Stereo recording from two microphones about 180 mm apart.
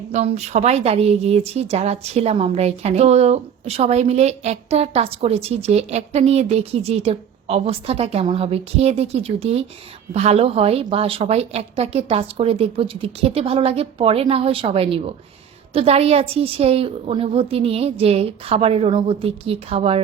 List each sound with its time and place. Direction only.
0.1 s speech: 35° right (ahead or behind)